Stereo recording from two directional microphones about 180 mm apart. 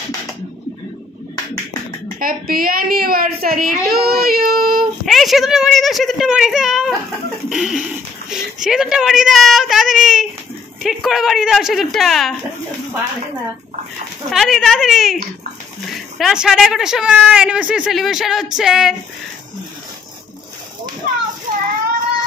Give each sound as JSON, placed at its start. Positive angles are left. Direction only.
{"t": 2.1, "sound": "a woman's voice", "side_deg": -50}
{"t": 5.0, "sound": "speech", "side_deg": 0}
{"t": 14.3, "sound": "speech", "side_deg": 0}
{"t": 16.2, "sound": "speech", "side_deg": 0}
{"t": 21.0, "sound": "children playing", "side_deg": -50}